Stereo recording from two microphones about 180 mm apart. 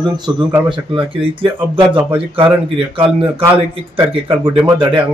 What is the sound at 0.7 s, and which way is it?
Speech, 30° right (ahead or behind).